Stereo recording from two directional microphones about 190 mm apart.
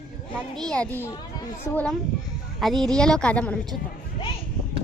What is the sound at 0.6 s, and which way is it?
A child's voice, 5° left (ahead or behind).